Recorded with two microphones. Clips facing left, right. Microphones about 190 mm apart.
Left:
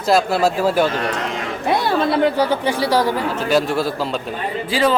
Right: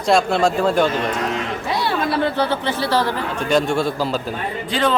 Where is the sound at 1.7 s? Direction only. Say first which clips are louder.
Left 4 dB; 50° left (ahead or behind).